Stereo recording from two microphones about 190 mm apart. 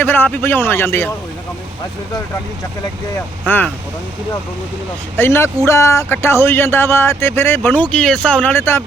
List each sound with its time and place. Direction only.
0.0 s speech: 10° left (ahead or behind)
3.4 s speech: 10° left (ahead or behind)
5.1 s speech: 10° left (ahead or behind)